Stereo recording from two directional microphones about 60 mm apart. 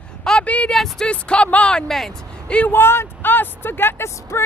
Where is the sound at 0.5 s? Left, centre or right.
Left.